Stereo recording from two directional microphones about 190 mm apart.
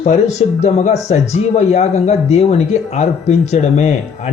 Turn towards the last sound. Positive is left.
turn(degrees=35)  # may be behind; listen again after turning